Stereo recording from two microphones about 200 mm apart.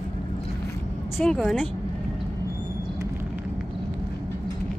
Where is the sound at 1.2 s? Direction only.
Centre (ahead or behind).